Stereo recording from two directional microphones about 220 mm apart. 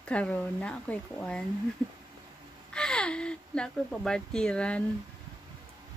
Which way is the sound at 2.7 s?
5° left (ahead or behind).